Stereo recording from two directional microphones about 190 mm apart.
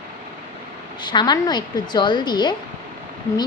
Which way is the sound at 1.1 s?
20° left (ahead or behind).